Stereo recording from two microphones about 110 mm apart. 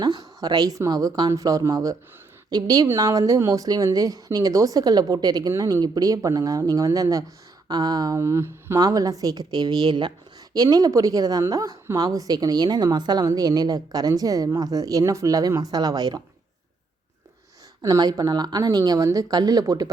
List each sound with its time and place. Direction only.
0.0 s speech: 40° right (ahead or behind)
8.8 s speech: 35° right (ahead or behind)
17.8 s speech: 35° right (ahead or behind)